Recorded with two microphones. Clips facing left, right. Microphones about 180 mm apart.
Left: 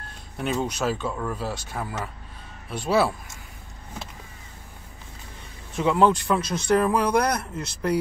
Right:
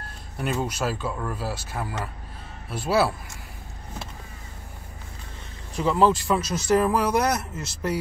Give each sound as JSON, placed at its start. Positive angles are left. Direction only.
{"t": 0.4, "sound": "speech", "side_deg": -5}
{"t": 5.8, "sound": "speech", "side_deg": 0}